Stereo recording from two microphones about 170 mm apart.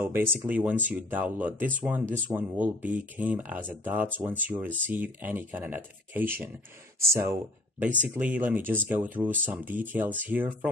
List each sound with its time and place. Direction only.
0.0 s speech: 15° right (ahead or behind)